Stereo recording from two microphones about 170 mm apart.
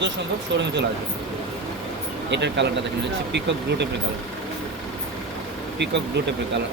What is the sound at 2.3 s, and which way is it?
Speech, 90° right.